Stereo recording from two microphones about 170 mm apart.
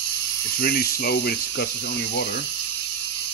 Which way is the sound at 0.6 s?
60° left (ahead or behind).